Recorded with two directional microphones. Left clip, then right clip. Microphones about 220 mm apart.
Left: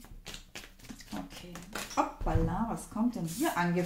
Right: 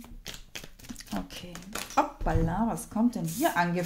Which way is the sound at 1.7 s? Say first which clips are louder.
Right 4 dB; 40° right (ahead or behind).